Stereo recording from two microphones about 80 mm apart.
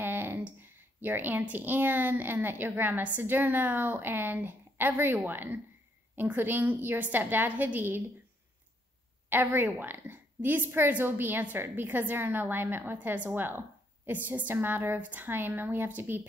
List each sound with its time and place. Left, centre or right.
0.0 s a woman's voice: right
9.3 s a woman's voice: right